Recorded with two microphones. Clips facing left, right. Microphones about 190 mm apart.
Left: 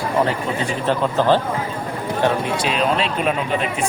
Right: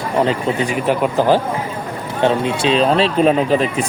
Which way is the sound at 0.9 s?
10° right (ahead or behind).